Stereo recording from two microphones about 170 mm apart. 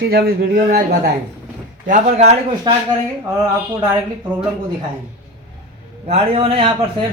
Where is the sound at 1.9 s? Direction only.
40° right (ahead or behind).